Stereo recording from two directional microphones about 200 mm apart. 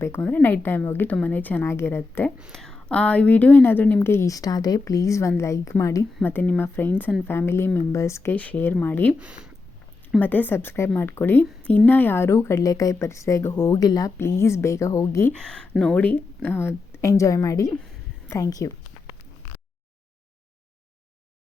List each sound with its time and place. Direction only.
0.0 s speech: 10° left (ahead or behind)
9.1 s speech: 5° right (ahead or behind)
10.1 s speech: 10° left (ahead or behind)